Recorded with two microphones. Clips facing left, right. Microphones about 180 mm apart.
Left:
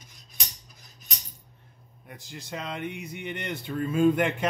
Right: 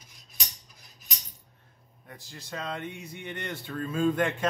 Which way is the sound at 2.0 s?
20° left (ahead or behind).